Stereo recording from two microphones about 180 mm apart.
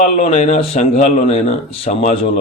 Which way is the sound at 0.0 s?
35° left (ahead or behind).